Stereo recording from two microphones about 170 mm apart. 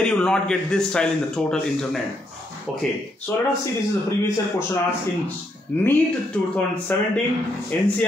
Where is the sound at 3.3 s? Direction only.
15° left (ahead or behind).